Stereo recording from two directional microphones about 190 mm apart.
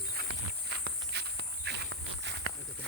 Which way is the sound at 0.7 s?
60° right (ahead or behind).